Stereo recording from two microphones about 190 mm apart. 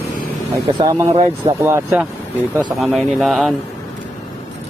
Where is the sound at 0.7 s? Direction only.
20° right (ahead or behind).